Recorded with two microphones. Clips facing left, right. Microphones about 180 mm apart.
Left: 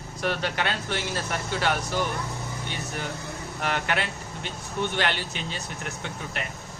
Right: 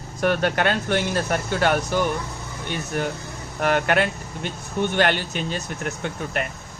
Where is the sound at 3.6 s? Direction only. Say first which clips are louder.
Right 8 dB; 50° right (ahead or behind).